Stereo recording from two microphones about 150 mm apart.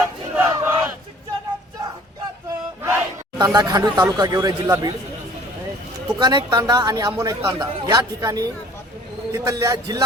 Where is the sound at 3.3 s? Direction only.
25° right (ahead or behind).